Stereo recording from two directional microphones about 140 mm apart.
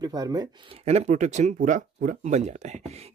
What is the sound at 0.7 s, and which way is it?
Speech, 50° right (ahead or behind).